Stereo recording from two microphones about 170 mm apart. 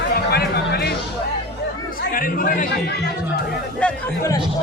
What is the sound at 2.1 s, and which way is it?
Speech, 55° left (ahead or behind).